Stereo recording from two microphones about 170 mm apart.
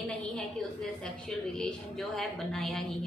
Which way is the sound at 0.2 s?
5° left (ahead or behind).